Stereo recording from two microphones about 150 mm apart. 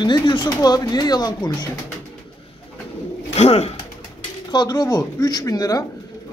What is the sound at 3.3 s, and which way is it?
Speech, 45° left (ahead or behind).